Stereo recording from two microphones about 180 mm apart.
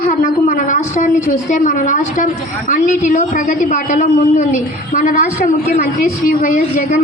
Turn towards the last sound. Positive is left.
turn(degrees=50)  # may be behind; listen again after turning